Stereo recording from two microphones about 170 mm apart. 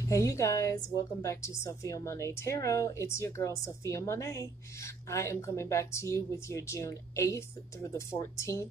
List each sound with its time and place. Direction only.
0.1 s a woman's voice: 20° left (ahead or behind)